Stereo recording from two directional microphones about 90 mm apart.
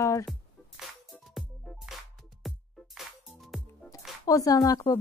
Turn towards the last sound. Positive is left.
turn(degrees=40)  # may be behind; listen again after turning